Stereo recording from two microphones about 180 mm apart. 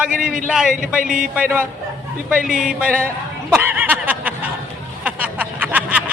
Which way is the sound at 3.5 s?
10° right (ahead or behind).